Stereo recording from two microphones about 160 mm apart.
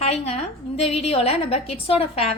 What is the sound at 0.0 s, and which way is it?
A woman's voice, 40° left (ahead or behind).